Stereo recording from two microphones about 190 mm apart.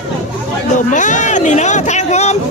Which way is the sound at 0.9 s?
40° left (ahead or behind).